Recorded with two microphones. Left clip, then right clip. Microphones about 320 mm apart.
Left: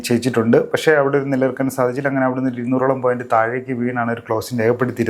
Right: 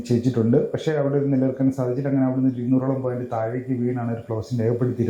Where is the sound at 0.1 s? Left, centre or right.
Centre.